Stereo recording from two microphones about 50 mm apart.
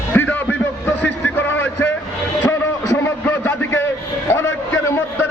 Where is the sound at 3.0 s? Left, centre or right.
Left.